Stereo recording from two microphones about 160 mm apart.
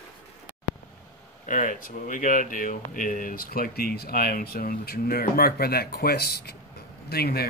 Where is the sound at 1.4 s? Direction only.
55° left (ahead or behind).